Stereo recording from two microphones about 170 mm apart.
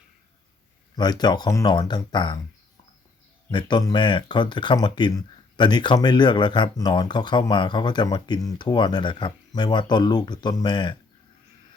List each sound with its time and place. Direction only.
0.9 s speech: 25° left (ahead or behind)
3.5 s speech: 25° left (ahead or behind)